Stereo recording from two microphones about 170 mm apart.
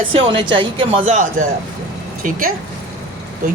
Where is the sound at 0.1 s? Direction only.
30° right (ahead or behind).